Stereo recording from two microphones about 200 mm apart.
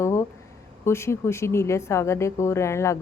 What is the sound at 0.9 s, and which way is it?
Speech, 15° left (ahead or behind).